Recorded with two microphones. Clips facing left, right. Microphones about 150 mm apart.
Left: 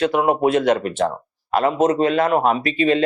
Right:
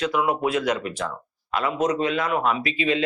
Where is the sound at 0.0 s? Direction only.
50° left (ahead or behind).